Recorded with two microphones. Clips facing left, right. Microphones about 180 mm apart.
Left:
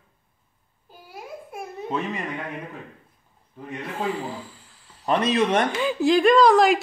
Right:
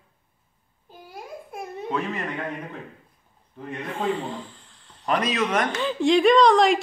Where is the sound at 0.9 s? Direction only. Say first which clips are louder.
Even; centre (ahead or behind).